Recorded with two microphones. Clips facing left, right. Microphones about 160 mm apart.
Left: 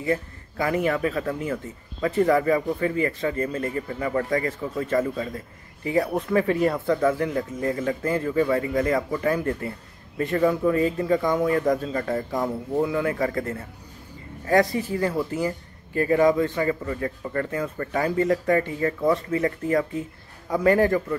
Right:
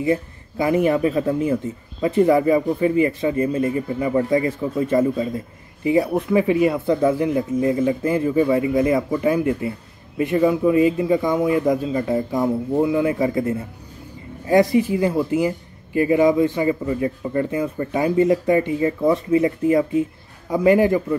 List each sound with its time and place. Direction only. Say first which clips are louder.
0.0 s speech: right 5 dB; 20° right (ahead or behind)